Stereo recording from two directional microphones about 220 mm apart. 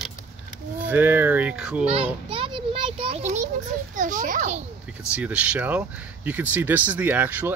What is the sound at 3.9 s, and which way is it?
Speech, 35° right (ahead or behind).